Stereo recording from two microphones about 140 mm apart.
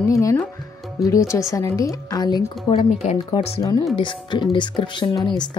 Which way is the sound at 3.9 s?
35° left (ahead or behind).